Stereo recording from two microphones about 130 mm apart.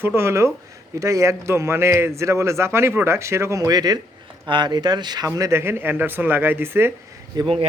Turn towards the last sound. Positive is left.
turn(degrees=-30)  # may be behind; listen again after turning